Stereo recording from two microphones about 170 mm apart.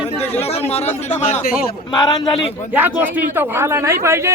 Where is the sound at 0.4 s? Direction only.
35° left (ahead or behind).